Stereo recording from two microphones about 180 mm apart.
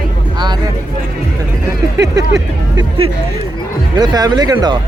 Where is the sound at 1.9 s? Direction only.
15° right (ahead or behind).